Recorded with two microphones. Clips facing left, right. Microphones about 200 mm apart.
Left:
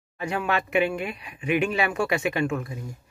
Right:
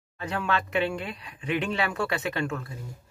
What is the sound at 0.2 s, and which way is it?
Speech, 10° left (ahead or behind).